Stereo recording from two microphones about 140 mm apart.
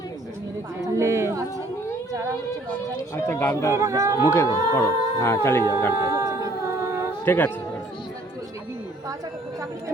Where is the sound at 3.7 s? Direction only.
20° right (ahead or behind).